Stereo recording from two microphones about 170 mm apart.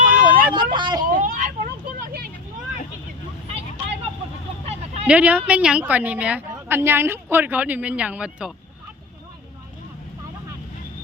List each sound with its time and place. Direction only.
0.0 s vehicle: 55° right (ahead or behind)
0.5 s vehicle: 25° right (ahead or behind)
1.0 s vehicle: 55° right (ahead or behind)
4.6 s a sound: 40° right (ahead or behind)
5.0 s speech: 10° right (ahead or behind)